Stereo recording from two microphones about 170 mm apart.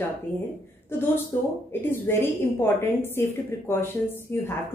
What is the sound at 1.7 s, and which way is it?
A woman's voice, 15° left (ahead or behind).